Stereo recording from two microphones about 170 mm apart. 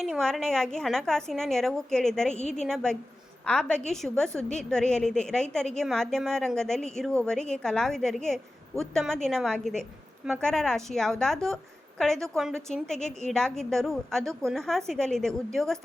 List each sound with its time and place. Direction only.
0.0 s a woman's voice: centre (ahead or behind)
2.3 s a woman's voice: 40° left (ahead or behind)
2.6 s a woman's voice: 5° left (ahead or behind)